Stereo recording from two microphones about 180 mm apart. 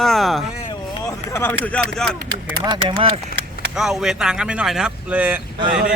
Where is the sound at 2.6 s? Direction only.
25° right (ahead or behind).